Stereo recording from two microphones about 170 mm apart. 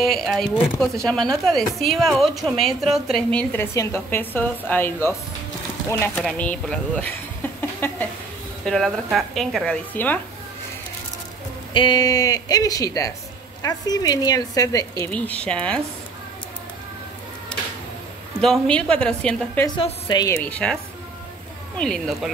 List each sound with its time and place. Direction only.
0.0 s a woman's voice: centre (ahead or behind)
7.8 s a sound: 15° left (ahead or behind)
8.6 s a woman's voice: centre (ahead or behind)
11.7 s speech: 25° left (ahead or behind)
15.0 s a woman's voice: 10° left (ahead or behind)
17.5 s a sound: 5° left (ahead or behind)
18.4 s speech: 5° left (ahead or behind)
19.8 s speech: 25° left (ahead or behind)
20.4 s a woman's voice: 10° left (ahead or behind)
21.7 s speech: 5° left (ahead or behind)